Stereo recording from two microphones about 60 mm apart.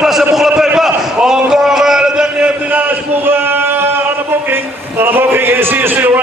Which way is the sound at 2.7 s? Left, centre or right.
Right.